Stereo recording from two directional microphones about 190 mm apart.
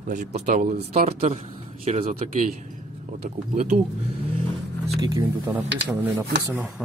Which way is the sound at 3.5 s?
35° right (ahead or behind).